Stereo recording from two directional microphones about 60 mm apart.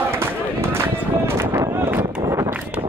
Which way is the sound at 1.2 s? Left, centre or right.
Right.